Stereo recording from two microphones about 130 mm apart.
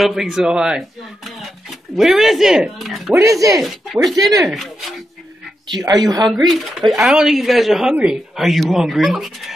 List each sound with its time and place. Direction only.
0.0 s speech: centre (ahead or behind)
3.2 s speech: 25° right (ahead or behind)
3.6 s speech: centre (ahead or behind)
4.1 s speech: 30° right (ahead or behind)
4.5 s speech: centre (ahead or behind)
5.7 s speech: 30° right (ahead or behind)
6.4 s speech: centre (ahead or behind)